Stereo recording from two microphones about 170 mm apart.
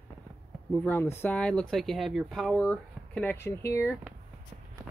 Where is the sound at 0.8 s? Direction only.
10° left (ahead or behind).